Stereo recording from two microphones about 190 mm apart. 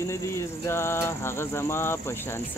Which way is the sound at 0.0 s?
15° left (ahead or behind).